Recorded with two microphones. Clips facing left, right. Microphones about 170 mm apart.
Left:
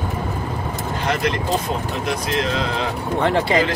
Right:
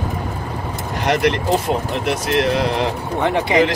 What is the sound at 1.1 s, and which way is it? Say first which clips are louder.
Speech: right 5 dB; 70° right (ahead or behind).